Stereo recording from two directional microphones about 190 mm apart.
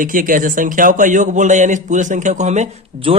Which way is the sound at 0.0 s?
45° right (ahead or behind).